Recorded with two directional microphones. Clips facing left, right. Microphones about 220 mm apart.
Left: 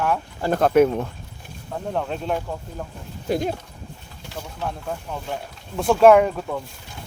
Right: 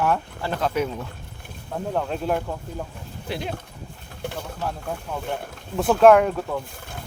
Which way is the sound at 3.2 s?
45° left (ahead or behind).